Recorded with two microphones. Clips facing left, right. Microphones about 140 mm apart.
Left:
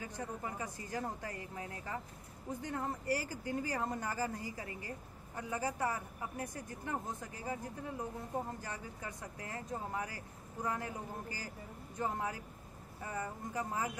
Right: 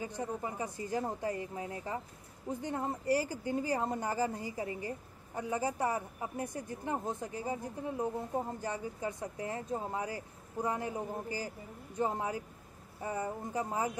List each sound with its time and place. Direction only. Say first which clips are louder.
0.2 s a woman's voice: right 4 dB; 20° right (ahead or behind)